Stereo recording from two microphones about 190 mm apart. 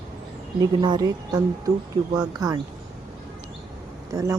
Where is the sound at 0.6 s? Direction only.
20° right (ahead or behind).